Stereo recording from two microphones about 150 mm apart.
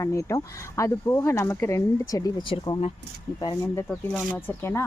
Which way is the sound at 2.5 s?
40° left (ahead or behind).